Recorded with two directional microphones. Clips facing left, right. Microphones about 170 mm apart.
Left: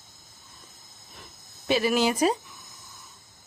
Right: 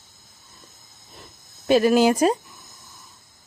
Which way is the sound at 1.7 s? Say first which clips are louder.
Right 7 dB; 45° right (ahead or behind).